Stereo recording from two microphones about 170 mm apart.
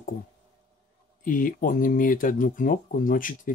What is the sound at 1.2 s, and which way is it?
Speech, 55° left (ahead or behind).